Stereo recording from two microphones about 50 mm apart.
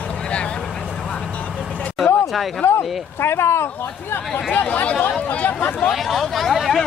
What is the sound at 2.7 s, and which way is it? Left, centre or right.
Speech, left.